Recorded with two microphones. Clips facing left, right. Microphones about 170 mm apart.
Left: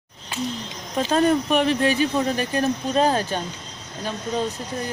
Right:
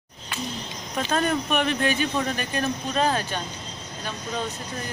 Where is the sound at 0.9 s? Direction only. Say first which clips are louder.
Left 5 dB; 30° left (ahead or behind).